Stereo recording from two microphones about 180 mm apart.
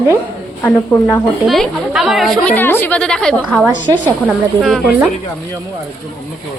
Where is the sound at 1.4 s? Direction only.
Centre (ahead or behind).